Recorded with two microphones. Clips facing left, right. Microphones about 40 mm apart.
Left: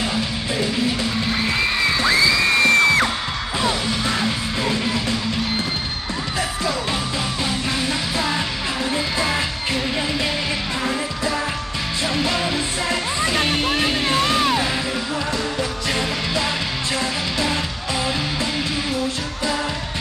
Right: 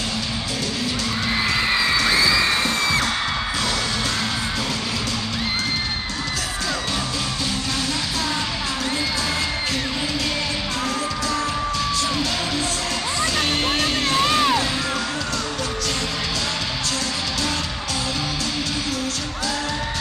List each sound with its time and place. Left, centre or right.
13.2 s music: left
14.2 s music: centre